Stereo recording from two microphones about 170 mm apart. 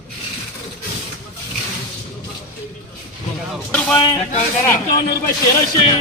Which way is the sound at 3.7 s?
5° left (ahead or behind).